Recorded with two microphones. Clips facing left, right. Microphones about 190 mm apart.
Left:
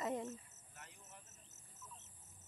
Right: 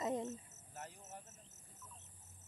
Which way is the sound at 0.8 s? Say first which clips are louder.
Right 9 dB; 40° right (ahead or behind).